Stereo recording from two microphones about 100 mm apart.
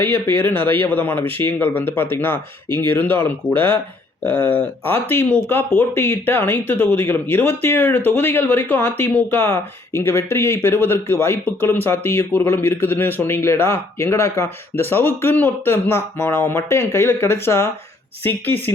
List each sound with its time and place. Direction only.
0.0 s speech: 20° left (ahead or behind)